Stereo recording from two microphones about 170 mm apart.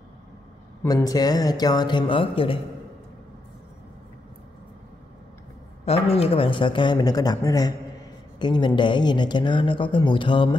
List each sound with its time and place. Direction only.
0.8 s speech: 20° left (ahead or behind)
5.9 s speech: 35° left (ahead or behind)